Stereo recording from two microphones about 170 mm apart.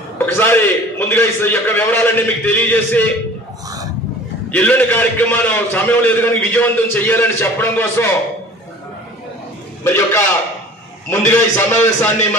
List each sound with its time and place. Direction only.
0.2 s a man's voice: 15° left (ahead or behind)
4.5 s a man's voice: 10° left (ahead or behind)
9.8 s a man's voice: 15° left (ahead or behind)